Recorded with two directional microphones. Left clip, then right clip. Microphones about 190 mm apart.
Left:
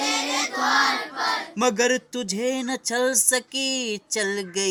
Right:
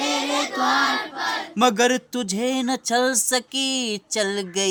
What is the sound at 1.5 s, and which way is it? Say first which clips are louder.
Speech: right 4 dB; 25° right (ahead or behind).